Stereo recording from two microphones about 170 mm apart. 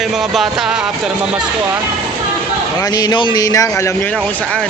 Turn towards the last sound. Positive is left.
turn(degrees=20)  # may be behind; listen again after turning